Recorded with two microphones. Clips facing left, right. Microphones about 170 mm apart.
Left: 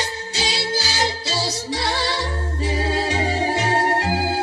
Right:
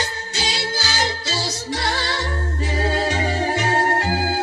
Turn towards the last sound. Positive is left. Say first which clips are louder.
# even
turn(degrees=30)  # may be behind; listen again after turning